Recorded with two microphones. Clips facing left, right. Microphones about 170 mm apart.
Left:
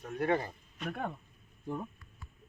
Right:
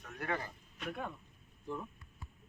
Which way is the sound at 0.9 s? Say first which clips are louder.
Left 4 dB; 50° left (ahead or behind).